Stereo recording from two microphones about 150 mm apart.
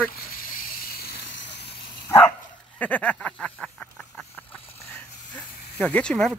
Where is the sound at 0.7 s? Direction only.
85° left.